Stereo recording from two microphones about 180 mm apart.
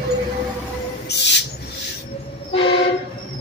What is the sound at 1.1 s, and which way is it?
Owl, 65° left (ahead or behind).